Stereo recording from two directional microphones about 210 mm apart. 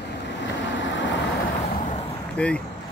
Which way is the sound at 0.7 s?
60° left (ahead or behind).